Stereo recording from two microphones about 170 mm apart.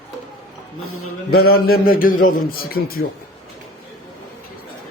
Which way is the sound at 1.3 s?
65° left (ahead or behind).